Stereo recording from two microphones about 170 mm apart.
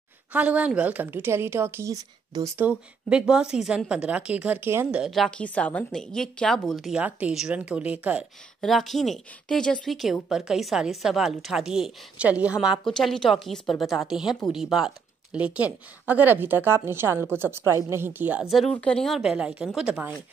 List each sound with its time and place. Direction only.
0.3 s a woman's voice: 10° right (ahead or behind)
3.1 s a woman's voice: 5° right (ahead or behind)
5.0 s a woman's voice: centre (ahead or behind)